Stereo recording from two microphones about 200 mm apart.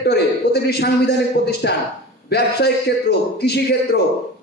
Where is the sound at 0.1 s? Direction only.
55° left (ahead or behind).